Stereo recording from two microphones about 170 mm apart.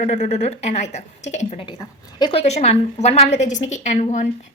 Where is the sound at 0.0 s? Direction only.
40° left (ahead or behind).